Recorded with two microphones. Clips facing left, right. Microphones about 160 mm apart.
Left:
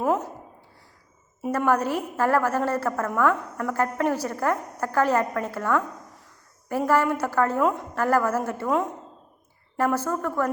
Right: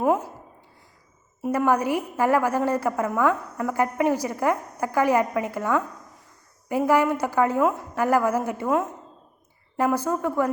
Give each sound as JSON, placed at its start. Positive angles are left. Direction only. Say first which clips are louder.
{"t": 0.0, "sound": "a woman's voice", "louder": "right 2 dB", "side_deg": -10}
{"t": 1.5, "sound": "a woman's voice", "louder": "right 1 dB", "side_deg": -10}